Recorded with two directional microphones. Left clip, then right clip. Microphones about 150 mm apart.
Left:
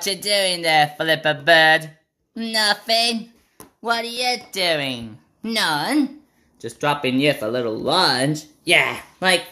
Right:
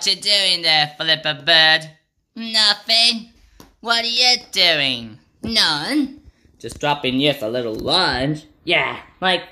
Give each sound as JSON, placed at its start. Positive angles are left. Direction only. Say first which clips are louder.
{"t": 0.0, "sound": "speech", "louder": "right 3 dB", "side_deg": 35}
{"t": 3.8, "sound": "a woman's voice", "louder": "right 5 dB", "side_deg": 10}